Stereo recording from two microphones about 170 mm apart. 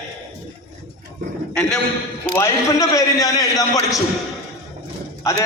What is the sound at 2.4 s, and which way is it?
A man's voice, 20° left (ahead or behind).